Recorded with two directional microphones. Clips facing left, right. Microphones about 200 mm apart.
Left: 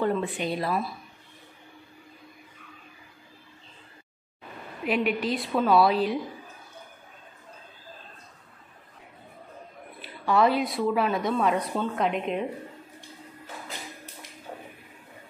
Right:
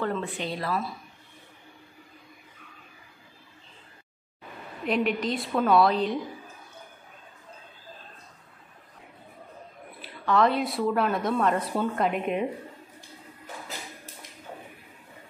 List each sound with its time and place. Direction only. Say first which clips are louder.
0.0 s speech: left 3 dB; 15° left (ahead or behind)
4.8 s a woman's voice: even; 5° left (ahead or behind)
10.2 s a woman's voice: left 1 dB; 5° left (ahead or behind)